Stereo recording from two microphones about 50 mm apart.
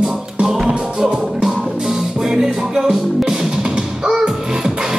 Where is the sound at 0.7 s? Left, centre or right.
Right.